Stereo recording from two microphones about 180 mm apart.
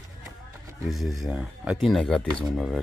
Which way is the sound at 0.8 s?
Centre (ahead or behind).